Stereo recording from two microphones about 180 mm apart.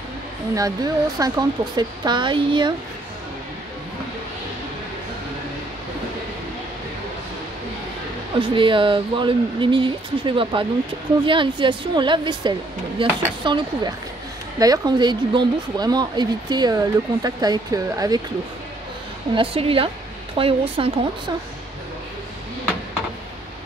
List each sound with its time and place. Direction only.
0.6 s speech: 20° right (ahead or behind)
8.4 s speech: 30° right (ahead or behind)
19.3 s speech: 30° right (ahead or behind)